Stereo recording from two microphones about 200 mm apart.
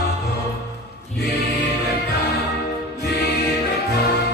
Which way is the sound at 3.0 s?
55° left (ahead or behind).